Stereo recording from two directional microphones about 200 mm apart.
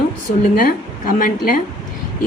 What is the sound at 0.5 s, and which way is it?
Speech, 45° left (ahead or behind).